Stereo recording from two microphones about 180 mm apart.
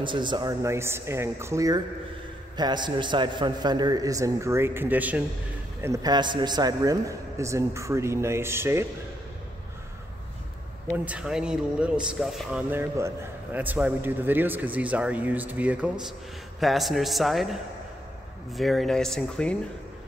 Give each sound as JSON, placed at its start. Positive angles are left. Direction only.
{"t": 0.0, "sound": "a man's voice", "side_deg": -25}
{"t": 11.1, "sound": "a man's voice", "side_deg": -5}
{"t": 18.6, "sound": "a man's voice", "side_deg": 0}